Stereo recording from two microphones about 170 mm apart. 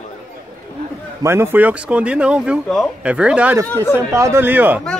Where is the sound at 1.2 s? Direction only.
15° right (ahead or behind).